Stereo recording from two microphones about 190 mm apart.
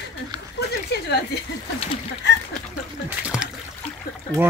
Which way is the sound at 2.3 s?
65° left (ahead or behind).